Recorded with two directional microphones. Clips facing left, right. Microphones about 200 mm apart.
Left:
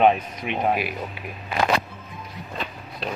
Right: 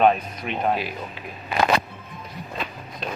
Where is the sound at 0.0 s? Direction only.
15° left (ahead or behind).